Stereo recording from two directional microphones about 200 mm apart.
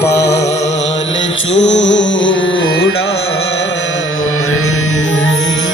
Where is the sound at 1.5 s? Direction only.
65° left (ahead or behind).